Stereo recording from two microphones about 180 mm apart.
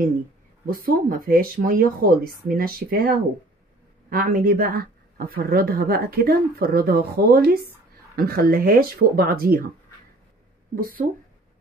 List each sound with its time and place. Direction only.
0.7 s speech: 50° right (ahead or behind)
10.8 s speech: 50° right (ahead or behind)